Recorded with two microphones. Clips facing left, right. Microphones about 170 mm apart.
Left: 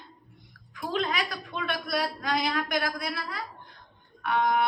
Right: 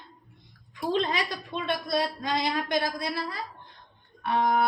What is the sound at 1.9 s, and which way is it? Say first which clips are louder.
A woman's voice: even; 25° right (ahead or behind).